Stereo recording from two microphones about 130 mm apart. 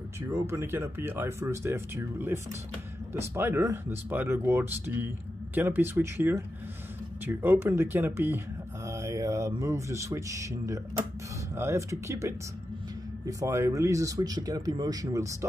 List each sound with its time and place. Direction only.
0.3 s speech: 20° right (ahead or behind)
8.8 s mantra: 25° right (ahead or behind)
9.6 s speech: 25° right (ahead or behind)